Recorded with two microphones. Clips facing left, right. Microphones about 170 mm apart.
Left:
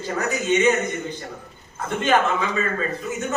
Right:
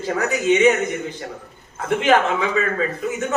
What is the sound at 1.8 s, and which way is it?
A man's voice, 80° right.